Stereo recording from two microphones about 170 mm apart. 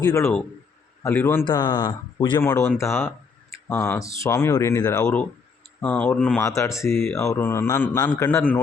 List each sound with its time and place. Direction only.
0.0 s speech: 15° left (ahead or behind)
1.5 s speech: 25° left (ahead or behind)
2.4 s speech: 15° left (ahead or behind)
5.8 s speech: 10° left (ahead or behind)
6.4 s speech: 15° left (ahead or behind)